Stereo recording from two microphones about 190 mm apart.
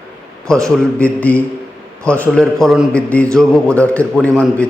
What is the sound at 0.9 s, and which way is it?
A man's voice, 5° left (ahead or behind).